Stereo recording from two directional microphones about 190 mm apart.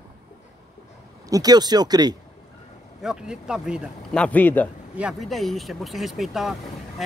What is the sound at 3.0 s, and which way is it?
A man's voice, 5° right (ahead or behind).